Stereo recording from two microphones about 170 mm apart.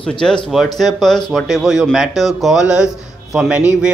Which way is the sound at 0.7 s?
Centre (ahead or behind).